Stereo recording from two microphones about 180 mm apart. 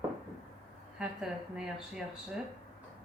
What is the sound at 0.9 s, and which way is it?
A woman's voice, 5° right (ahead or behind).